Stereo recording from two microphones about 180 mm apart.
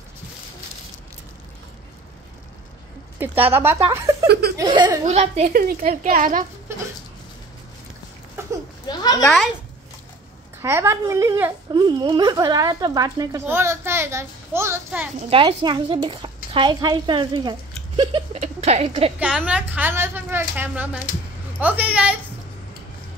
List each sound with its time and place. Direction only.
3.2 s a woman's voice: 10° right (ahead or behind)
4.3 s laughter: 60° right (ahead or behind)
4.6 s a woman's voice: 25° right (ahead or behind)
5.0 s a woman's voice: 35° right (ahead or behind)
5.5 s speech: 50° right (ahead or behind)
8.4 s a sound: 15° right (ahead or behind)
8.8 s a sound: 20° left (ahead or behind)
9.2 s speech: centre (ahead or behind)
10.6 s a woman's voice: 15° right (ahead or behind)
11.7 s a woman's voice: 25° right (ahead or behind)
15.1 s a woman's voice: 30° right (ahead or behind)
19.1 s a woman's voice: 5° right (ahead or behind)